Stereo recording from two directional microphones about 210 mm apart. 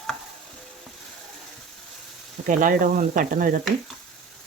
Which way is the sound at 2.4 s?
40° right (ahead or behind).